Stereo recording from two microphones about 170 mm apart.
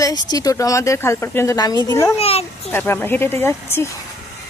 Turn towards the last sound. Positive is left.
turn(degrees=15)  # may be behind; listen again after turning